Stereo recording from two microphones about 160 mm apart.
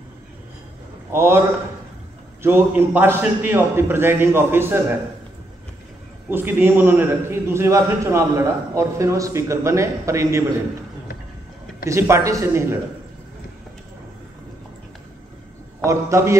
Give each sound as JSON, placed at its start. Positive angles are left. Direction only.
{"t": 1.1, "sound": "a man's voice", "side_deg": -15}
{"t": 2.4, "sound": "a man's voice", "side_deg": -15}
{"t": 6.3, "sound": "a man's voice", "side_deg": -15}
{"t": 11.8, "sound": "a man's voice", "side_deg": -20}
{"t": 15.8, "sound": "a man's voice", "side_deg": -20}